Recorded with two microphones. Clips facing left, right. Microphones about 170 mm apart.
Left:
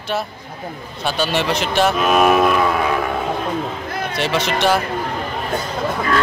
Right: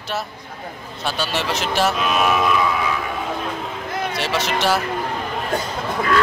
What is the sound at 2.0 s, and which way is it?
Music, 50° left (ahead or behind).